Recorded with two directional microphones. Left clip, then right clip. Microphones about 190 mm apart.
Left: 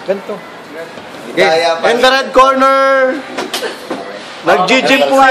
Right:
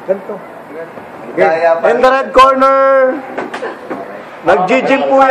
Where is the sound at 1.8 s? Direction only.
30° left (ahead or behind).